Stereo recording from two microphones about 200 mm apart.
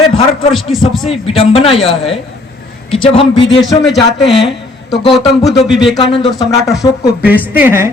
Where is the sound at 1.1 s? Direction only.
30° left (ahead or behind).